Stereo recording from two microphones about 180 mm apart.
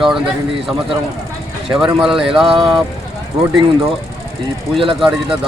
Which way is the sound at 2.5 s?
30° right (ahead or behind).